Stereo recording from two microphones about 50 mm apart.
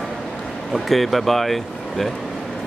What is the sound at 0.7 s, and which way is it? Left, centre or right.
Speech, centre.